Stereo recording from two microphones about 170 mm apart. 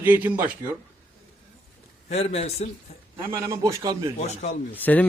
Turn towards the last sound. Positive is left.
turn(degrees=10)  # may be behind; listen again after turning